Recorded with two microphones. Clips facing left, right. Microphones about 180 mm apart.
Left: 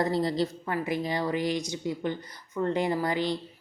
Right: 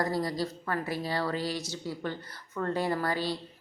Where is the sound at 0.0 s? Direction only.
25° left (ahead or behind).